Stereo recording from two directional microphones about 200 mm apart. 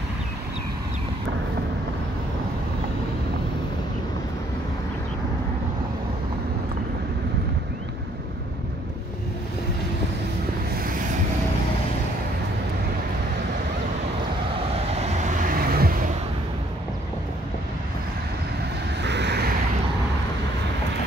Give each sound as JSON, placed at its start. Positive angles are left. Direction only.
{"t": 14.9, "sound": "vehicle", "side_deg": -35}
{"t": 19.0, "sound": "vehicle", "side_deg": -60}